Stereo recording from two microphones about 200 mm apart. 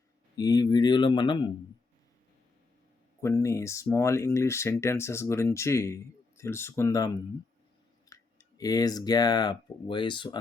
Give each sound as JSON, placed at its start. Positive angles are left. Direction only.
{"t": 0.3, "sound": "speech", "side_deg": 20}
{"t": 3.2, "sound": "speech", "side_deg": 15}
{"t": 8.1, "sound": "speech", "side_deg": 15}